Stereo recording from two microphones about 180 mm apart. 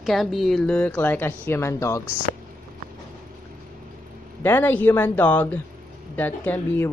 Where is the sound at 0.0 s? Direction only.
Centre (ahead or behind); by 2.0 s 15° left (ahead or behind).